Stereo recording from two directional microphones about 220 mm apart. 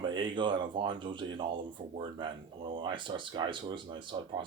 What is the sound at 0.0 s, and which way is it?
Speech, 20° right (ahead or behind).